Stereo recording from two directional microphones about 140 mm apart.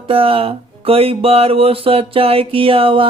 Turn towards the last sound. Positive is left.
turn(degrees=-40)  # may be behind; listen again after turning